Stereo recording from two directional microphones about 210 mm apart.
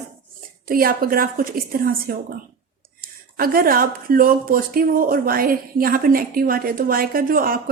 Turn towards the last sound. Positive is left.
turn(degrees=-45)  # may be behind; listen again after turning